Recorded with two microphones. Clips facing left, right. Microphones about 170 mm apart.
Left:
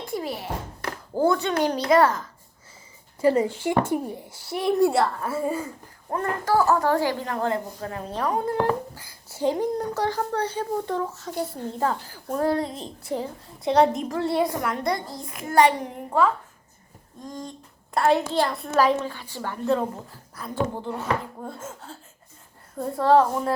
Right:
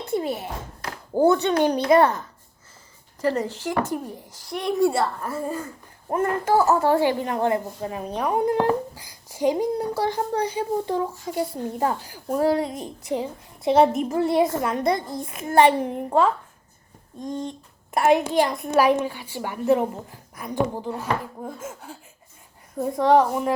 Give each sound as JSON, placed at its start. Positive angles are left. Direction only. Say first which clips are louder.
{"t": 0.1, "sound": "a child's voice", "louder": "right 4 dB", "side_deg": -25}
{"t": 3.2, "sound": "speech", "louder": "left 4 dB", "side_deg": 10}
{"t": 6.1, "sound": "a child's voice", "louder": "right 3 dB", "side_deg": -20}